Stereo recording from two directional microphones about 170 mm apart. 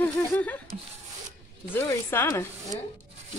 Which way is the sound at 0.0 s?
10° left (ahead or behind).